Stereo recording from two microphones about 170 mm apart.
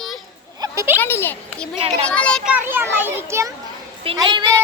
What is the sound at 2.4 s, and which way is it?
A child's voice, 10° right (ahead or behind).